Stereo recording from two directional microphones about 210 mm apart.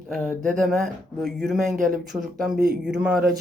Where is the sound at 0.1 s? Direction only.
5° left (ahead or behind).